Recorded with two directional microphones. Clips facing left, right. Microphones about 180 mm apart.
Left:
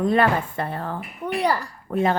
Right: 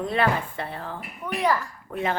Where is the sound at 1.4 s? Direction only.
35° left (ahead or behind).